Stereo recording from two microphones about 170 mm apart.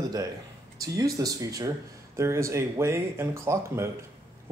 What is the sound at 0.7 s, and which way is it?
Speech, 20° right (ahead or behind).